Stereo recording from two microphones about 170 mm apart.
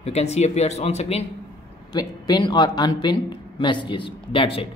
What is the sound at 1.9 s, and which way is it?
Speech, 25° left (ahead or behind).